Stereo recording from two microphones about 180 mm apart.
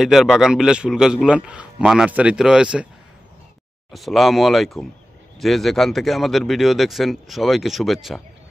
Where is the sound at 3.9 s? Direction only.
Centre (ahead or behind).